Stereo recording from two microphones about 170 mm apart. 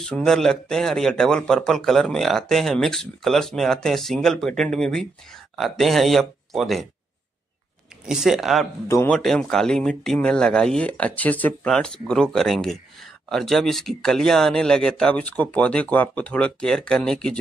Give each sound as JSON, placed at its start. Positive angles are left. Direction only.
{"t": 0.0, "sound": "speech", "side_deg": 5}
{"t": 8.0, "sound": "speech", "side_deg": -5}
{"t": 8.8, "sound": "a man's voice", "side_deg": 15}
{"t": 9.1, "sound": "speech", "side_deg": 5}